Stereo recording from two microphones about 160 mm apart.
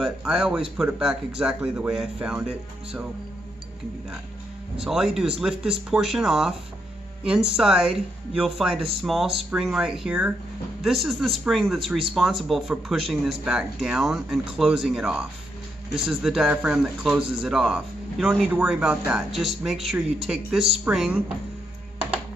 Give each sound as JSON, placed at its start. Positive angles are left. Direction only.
{"t": 0.0, "sound": "a man's voice", "side_deg": -5}
{"t": 4.7, "sound": "a man's voice", "side_deg": -5}